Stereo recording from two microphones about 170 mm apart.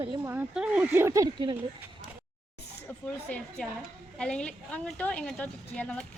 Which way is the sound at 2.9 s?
5° left (ahead or behind).